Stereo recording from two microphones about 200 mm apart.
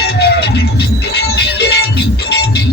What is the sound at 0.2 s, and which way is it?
Music, 55° left (ahead or behind).